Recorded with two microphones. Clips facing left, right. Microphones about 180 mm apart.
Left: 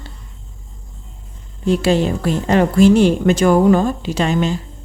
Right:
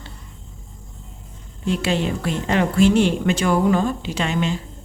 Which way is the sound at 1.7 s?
40° left (ahead or behind).